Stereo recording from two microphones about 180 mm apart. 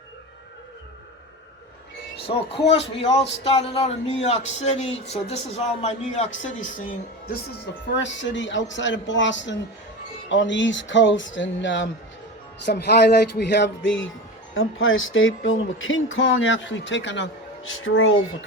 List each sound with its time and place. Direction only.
2.2 s speech: 35° left (ahead or behind)
7.9 s speech: 85° left
12.6 s speech: 65° left (ahead or behind); by 18.2 s 90° left